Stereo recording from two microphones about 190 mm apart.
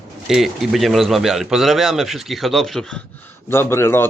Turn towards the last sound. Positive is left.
turn(degrees=15)  # may be behind; listen again after turning